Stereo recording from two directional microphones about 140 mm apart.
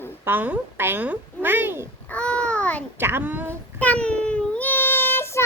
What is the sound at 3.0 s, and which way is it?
Speech, 15° right (ahead or behind).